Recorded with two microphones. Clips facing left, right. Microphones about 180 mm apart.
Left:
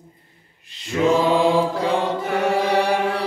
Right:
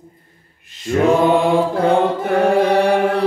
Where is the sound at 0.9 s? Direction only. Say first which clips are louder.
Right 4 dB; 55° right (ahead or behind).